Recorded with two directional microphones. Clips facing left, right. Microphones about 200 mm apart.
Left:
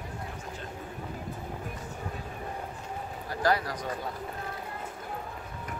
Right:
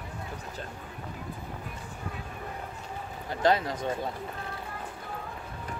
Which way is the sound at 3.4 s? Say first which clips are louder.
Right 3 dB; 25° right (ahead or behind).